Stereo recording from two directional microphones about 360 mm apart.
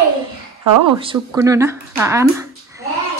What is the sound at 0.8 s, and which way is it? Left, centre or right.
Speech, centre.